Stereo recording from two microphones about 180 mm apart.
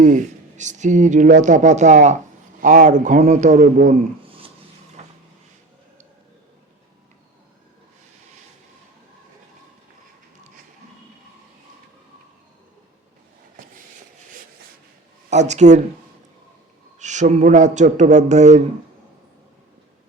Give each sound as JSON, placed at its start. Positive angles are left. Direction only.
{"t": 0.0, "sound": "speech", "side_deg": -45}
{"t": 4.3, "sound": "a sound", "side_deg": -30}
{"t": 5.0, "sound": "vehicle", "side_deg": -40}
{"t": 13.6, "sound": "a sound", "side_deg": -50}
{"t": 15.3, "sound": "a man's voice", "side_deg": -40}
{"t": 17.0, "sound": "a man's voice", "side_deg": -40}